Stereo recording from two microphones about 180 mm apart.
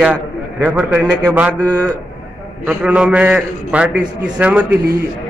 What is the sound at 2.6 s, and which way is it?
A man's voice, 5° right (ahead or behind).